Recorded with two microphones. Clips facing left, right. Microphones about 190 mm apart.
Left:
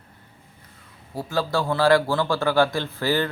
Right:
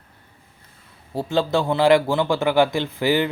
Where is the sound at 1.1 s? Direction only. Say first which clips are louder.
Right 4 dB; 25° right (ahead or behind).